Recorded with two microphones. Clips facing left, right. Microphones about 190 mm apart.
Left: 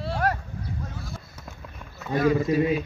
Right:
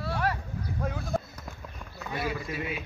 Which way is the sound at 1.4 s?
Centre (ahead or behind).